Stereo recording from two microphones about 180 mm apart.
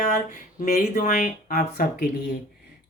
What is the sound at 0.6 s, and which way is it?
Speech, 45° left (ahead or behind).